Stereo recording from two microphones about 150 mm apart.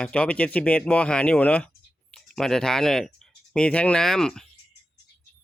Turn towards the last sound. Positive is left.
turn(degrees=5)  # may be behind; listen again after turning